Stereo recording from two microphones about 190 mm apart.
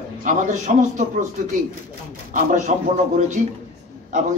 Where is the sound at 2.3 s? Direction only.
45° right (ahead or behind).